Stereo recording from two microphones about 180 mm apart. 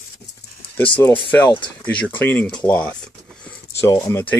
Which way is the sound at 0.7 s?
10° left (ahead or behind).